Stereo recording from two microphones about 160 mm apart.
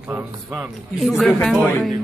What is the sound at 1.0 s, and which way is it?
Speech, centre (ahead or behind).